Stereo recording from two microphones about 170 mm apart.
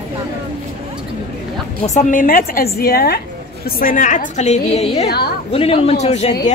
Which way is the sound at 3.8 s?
50° left (ahead or behind).